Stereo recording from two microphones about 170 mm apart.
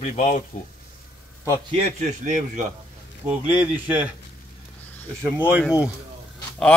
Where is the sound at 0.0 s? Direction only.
45° left (ahead or behind).